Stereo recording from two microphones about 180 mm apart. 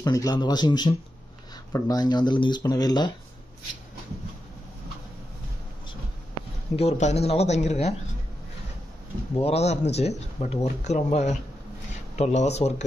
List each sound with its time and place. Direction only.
0.0 s speech: 20° left (ahead or behind)
6.8 s speech: 35° left (ahead or behind)
9.3 s speech: 35° left (ahead or behind)